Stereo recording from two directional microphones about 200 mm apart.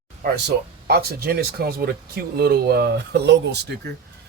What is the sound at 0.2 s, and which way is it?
Speech, 50° right (ahead or behind).